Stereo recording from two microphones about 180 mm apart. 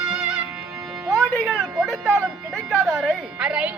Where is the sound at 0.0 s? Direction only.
5° right (ahead or behind).